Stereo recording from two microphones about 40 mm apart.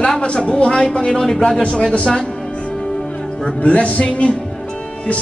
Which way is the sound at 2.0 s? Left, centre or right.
Left.